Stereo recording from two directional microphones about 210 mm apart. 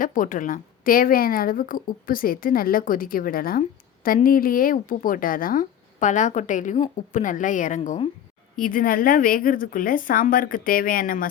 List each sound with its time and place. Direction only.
0.0 s a woman's voice: 40° left (ahead or behind)
8.5 s speech: 40° left (ahead or behind)